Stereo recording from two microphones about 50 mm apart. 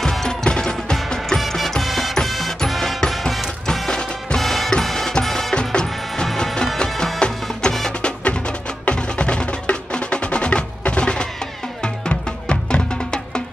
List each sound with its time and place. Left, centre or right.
0.0 s music: centre
1.4 s music: centre
4.4 s music: centre
8.2 s music: left